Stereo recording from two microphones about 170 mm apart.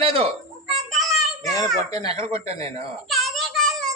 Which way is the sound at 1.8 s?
20° left (ahead or behind).